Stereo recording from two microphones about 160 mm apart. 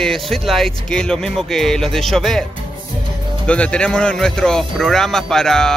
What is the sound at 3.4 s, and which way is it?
Speech, 5° left (ahead or behind).